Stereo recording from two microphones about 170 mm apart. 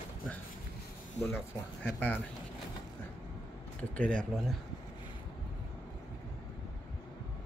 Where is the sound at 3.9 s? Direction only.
10° left (ahead or behind).